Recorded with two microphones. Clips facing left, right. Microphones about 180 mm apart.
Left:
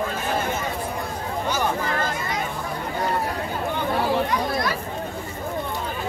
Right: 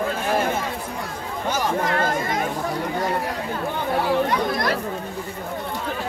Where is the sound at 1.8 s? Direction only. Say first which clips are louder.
Right 4 dB; 60° right (ahead or behind).